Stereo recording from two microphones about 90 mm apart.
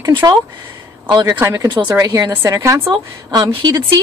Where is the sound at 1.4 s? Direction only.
35° right (ahead or behind).